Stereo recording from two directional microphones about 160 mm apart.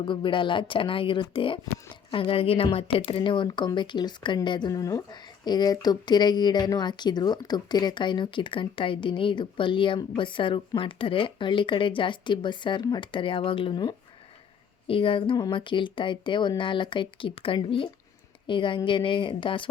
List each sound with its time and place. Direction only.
0.0 s speech: 30° left (ahead or behind)